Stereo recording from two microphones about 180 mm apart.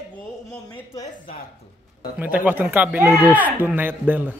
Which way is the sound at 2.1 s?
10° right (ahead or behind).